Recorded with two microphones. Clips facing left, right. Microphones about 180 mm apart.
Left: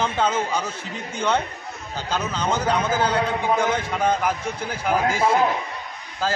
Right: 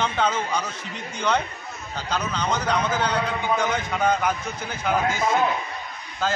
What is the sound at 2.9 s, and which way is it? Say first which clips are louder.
A man's voice: left 3 dB; 30° left (ahead or behind).